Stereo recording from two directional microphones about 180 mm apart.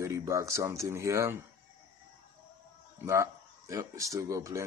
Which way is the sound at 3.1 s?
15° right (ahead or behind).